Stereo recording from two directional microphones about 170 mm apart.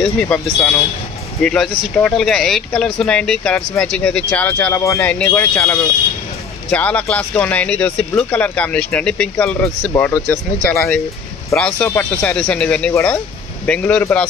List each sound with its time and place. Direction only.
0.0 s speech: 5° left (ahead or behind)
11.5 s speech: 5° left (ahead or behind)
12.9 s speech: 15° left (ahead or behind)